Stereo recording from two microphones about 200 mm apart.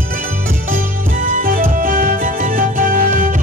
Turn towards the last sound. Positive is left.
turn(degrees=-45)  # may be behind; listen again after turning